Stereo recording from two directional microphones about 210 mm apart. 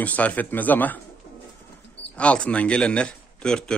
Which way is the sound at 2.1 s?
5° left (ahead or behind).